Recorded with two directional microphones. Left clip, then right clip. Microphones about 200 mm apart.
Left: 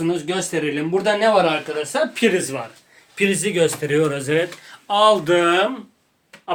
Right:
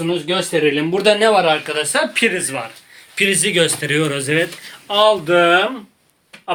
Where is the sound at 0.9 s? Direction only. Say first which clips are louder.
Right 2 dB; 45° right (ahead or behind).